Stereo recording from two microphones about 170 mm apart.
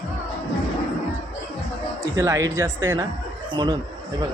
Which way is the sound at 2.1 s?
20° right (ahead or behind).